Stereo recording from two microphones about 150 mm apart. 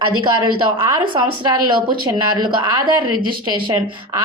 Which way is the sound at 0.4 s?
25° right (ahead or behind).